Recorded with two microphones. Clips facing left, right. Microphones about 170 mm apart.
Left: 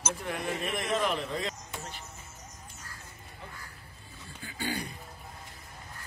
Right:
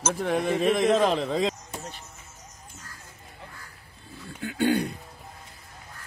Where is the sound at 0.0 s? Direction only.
85° right.